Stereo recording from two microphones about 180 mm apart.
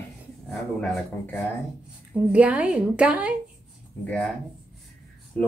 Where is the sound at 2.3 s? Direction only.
5° right (ahead or behind).